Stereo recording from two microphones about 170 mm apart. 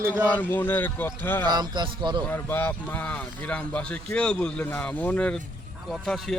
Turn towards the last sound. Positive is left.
turn(degrees=0)  # may be behind; listen again after turning